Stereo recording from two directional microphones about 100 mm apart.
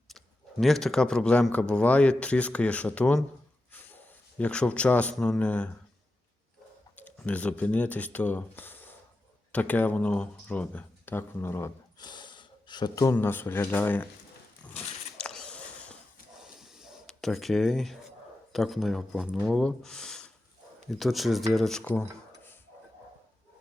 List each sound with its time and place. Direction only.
0.6 s a man's voice: 5° left (ahead or behind)
3.7 s a sound: 20° left (ahead or behind)
5.2 s a man's voice: 10° left (ahead or behind)
6.9 s a man's voice: 15° left (ahead or behind)
11.9 s gasp: 50° left (ahead or behind)
13.1 s speech: 25° left (ahead or behind)
14.8 s a sound: 5° left (ahead or behind)
16.4 s a sound: 5° right (ahead or behind)
18.5 s speech: centre (ahead or behind)